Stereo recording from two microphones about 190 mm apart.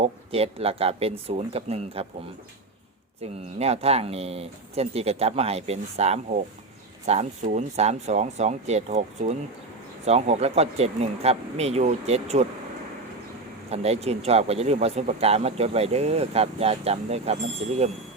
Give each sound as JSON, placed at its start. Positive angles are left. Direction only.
{"t": 0.0, "sound": "speech", "side_deg": -30}
{"t": 3.2, "sound": "speech", "side_deg": -35}
{"t": 13.7, "sound": "speech", "side_deg": -35}